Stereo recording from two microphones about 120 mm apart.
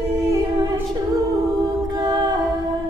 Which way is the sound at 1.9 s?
40° right (ahead or behind).